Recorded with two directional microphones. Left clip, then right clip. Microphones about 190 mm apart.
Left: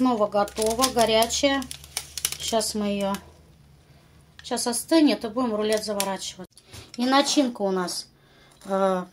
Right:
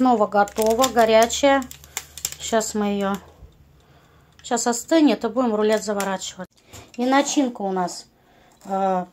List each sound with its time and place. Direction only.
0.0 s speech: 20° right (ahead or behind)
4.4 s speech: 20° right (ahead or behind)